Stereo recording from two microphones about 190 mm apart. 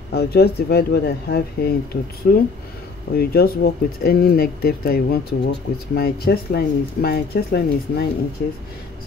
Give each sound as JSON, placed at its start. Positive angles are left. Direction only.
{"t": 0.1, "sound": "speech", "side_deg": 55}